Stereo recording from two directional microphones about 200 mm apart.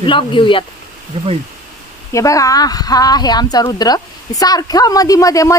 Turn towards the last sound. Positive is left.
turn(degrees=15)  # may be behind; listen again after turning